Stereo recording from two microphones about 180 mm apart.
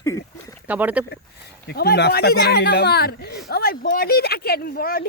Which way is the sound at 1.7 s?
65° left (ahead or behind).